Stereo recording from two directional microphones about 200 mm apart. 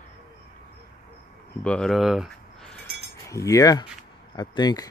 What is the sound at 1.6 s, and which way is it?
Speech, 5° left (ahead or behind).